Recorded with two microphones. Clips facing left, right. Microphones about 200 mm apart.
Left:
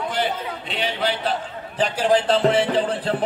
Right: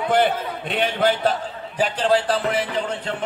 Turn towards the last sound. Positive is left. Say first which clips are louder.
# left 4 dB
turn(degrees=35)  # may be behind; listen again after turning